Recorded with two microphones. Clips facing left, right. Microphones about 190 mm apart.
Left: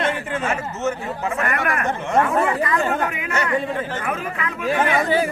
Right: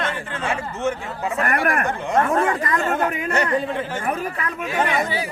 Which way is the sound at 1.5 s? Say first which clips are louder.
Right 3 dB; 35° right (ahead or behind).